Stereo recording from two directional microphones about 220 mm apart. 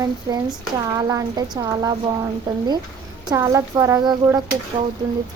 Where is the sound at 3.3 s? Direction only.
15° right (ahead or behind).